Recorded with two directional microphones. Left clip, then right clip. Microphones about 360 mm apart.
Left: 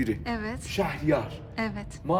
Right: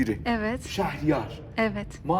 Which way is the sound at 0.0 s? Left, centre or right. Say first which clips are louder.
Right 4 dB; centre.